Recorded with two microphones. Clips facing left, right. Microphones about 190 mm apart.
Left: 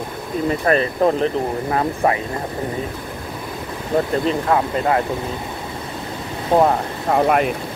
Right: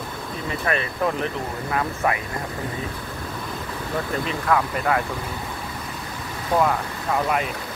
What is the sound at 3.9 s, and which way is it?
Speech, 30° left (ahead or behind).